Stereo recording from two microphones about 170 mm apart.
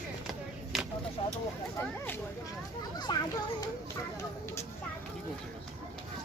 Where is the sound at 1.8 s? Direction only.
10° left (ahead or behind).